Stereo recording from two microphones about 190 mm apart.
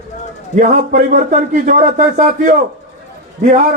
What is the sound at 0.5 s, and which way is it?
Speech, 45° right (ahead or behind).